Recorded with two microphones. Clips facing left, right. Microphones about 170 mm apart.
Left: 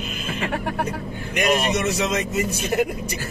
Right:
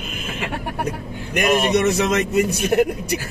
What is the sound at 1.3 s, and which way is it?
A man's voice, 60° right (ahead or behind).